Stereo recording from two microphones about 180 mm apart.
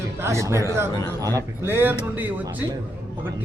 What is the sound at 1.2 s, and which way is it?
A man's voice, 15° right (ahead or behind).